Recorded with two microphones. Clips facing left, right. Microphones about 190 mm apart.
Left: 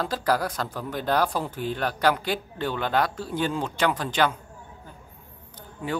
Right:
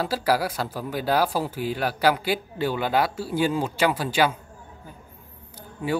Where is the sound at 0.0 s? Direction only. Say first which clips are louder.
Right 2 dB; 10° right (ahead or behind).